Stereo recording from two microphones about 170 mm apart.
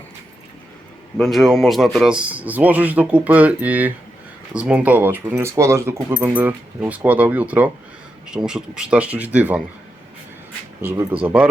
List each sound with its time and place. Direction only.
1.1 s speech: centre (ahead or behind)
10.8 s speech: 15° right (ahead or behind)